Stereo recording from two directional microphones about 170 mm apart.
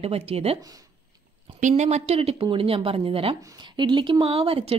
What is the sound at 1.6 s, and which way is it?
Speech, 45° right (ahead or behind).